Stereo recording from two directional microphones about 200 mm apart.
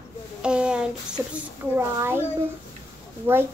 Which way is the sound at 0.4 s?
5° right (ahead or behind).